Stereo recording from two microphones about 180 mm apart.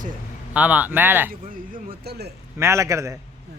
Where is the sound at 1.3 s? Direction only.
55° right (ahead or behind).